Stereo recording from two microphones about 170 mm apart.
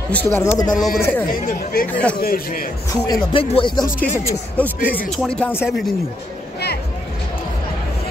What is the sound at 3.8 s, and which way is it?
Speech, 55° left (ahead or behind).